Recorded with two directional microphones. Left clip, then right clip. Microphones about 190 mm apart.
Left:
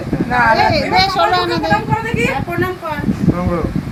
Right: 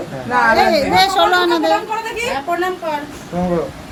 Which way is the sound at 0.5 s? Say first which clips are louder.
Even; 15° right (ahead or behind).